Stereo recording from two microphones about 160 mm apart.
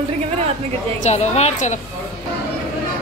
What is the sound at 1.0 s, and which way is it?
Speech, 45° left (ahead or behind).